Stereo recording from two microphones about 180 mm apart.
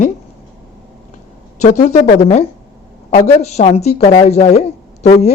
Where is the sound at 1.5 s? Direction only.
40° left (ahead or behind).